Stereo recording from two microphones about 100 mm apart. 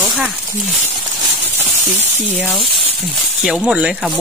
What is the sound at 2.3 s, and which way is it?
Speech, 15° right (ahead or behind).